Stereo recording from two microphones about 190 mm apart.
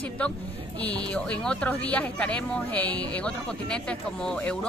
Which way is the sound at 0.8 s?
5° left (ahead or behind).